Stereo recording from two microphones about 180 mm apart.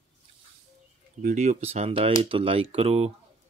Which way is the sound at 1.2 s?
45° right (ahead or behind).